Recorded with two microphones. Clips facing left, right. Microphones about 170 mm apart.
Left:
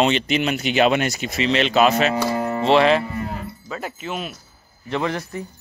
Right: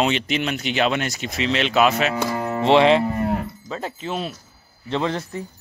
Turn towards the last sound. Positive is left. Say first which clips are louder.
# even
turn(degrees=-25)  # may be behind; listen again after turning